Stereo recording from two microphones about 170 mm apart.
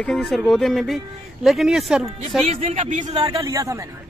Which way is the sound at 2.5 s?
40° right (ahead or behind).